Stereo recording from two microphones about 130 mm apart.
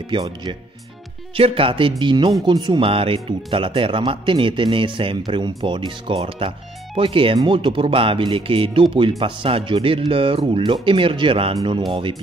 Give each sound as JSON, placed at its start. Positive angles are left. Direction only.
{"t": 0.1, "sound": "speech", "side_deg": -40}